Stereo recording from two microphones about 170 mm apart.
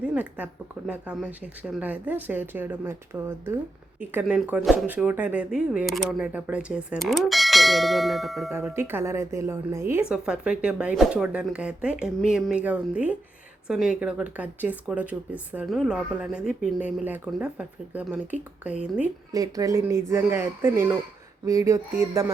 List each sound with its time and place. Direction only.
0.0 s speech: 10° right (ahead or behind)
8.5 s speech: 15° right (ahead or behind)
19.3 s speech: 20° right (ahead or behind)